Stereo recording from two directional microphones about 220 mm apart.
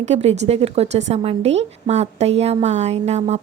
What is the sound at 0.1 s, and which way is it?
A woman's voice, 30° right (ahead or behind).